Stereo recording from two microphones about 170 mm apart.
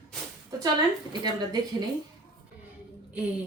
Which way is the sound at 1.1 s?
25° right (ahead or behind).